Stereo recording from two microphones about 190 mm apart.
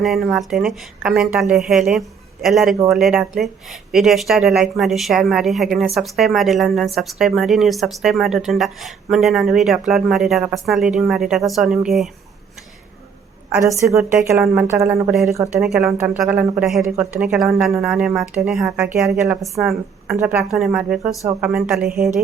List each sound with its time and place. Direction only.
0.0 s speech: centre (ahead or behind)
13.6 s speech: 15° right (ahead or behind)
13.8 s speech: centre (ahead or behind)